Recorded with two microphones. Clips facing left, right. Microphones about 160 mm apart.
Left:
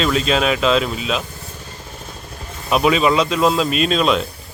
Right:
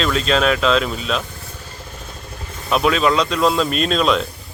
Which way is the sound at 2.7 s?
5° left (ahead or behind).